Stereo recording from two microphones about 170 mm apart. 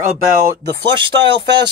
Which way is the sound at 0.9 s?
30° right (ahead or behind).